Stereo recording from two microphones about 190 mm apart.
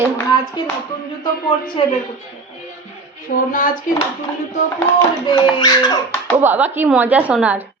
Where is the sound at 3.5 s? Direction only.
45° left (ahead or behind).